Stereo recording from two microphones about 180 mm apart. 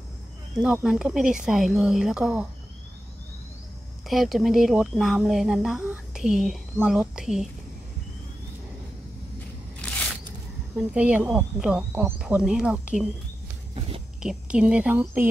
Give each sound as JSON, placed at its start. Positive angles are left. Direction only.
{"t": 0.6, "sound": "a woman's voice", "side_deg": -5}
{"t": 4.1, "sound": "a woman's voice", "side_deg": 0}
{"t": 9.8, "sound": "scissors", "side_deg": 5}
{"t": 10.8, "sound": "speech", "side_deg": -5}
{"t": 13.7, "sound": "a sound", "side_deg": -30}
{"t": 14.2, "sound": "speech", "side_deg": -5}